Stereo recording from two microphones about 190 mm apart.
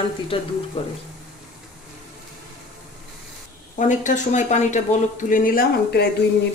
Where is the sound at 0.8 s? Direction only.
30° left (ahead or behind).